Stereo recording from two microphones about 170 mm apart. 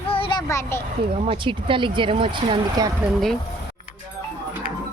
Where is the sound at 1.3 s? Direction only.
30° right (ahead or behind).